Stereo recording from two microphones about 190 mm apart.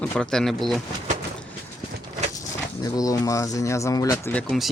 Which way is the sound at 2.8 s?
20° left (ahead or behind).